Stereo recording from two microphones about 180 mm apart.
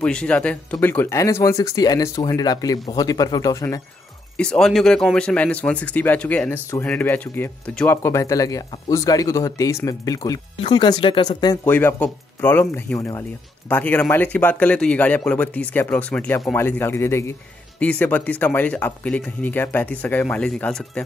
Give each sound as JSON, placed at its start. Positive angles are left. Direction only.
{"t": 0.0, "sound": "speech", "side_deg": 5}
{"t": 4.4, "sound": "speech", "side_deg": 5}
{"t": 11.6, "sound": "speech", "side_deg": 10}